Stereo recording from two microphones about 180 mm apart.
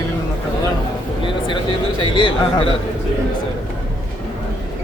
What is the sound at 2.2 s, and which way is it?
Speech, 25° left (ahead or behind).